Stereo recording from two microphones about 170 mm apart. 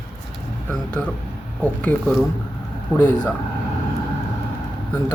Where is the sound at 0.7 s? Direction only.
10° left (ahead or behind).